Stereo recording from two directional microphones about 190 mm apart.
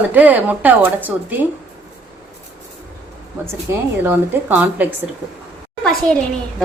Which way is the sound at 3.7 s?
15° right (ahead or behind).